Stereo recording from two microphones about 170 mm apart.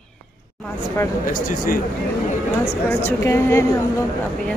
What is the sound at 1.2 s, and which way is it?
Speech, 55° left (ahead or behind).